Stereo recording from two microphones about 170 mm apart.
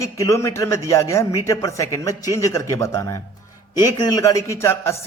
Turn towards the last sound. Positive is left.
turn(degrees=15)  # may be behind; listen again after turning